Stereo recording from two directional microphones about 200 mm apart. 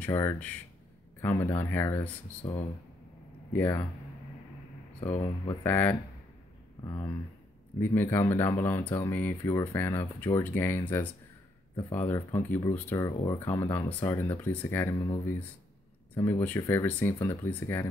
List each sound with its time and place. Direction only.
0.1 s speech: 15° left (ahead or behind)
5.1 s speech: 15° left (ahead or behind)
7.8 s speech: 10° left (ahead or behind)
16.2 s speech: 10° left (ahead or behind)